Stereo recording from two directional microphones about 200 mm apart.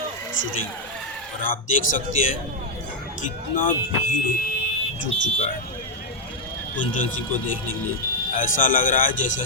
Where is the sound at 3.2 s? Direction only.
40° left (ahead or behind).